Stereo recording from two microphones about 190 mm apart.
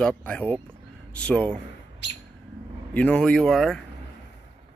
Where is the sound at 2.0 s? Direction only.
70° left (ahead or behind).